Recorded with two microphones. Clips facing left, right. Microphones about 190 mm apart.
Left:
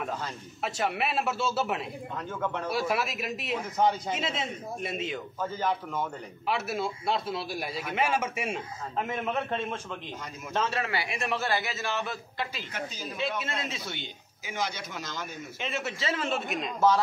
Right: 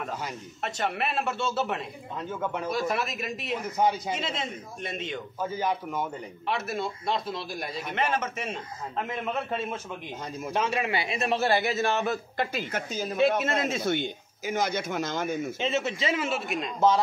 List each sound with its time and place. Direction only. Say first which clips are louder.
0.6 s a man's voice: even; 5° left (ahead or behind)
2.1 s a man's voice: right 2 dB; 10° right (ahead or behind)
2.7 s a man's voice: even; 5° left (ahead or behind)
3.7 s a man's voice: even; 10° right (ahead or behind)
4.1 s a man's voice: even; 5° left (ahead or behind)
5.4 s a man's voice: right 1 dB; 10° right (ahead or behind)
6.4 s a man's voice: even; 5° left (ahead or behind); by 11.6 s 25° right (ahead or behind)
11.6 s a man's voice: right 7 dB; 50° right (ahead or behind)
15.6 s a man's voice: right 2 dB; 20° right (ahead or behind); by 16.7 s centre (ahead or behind)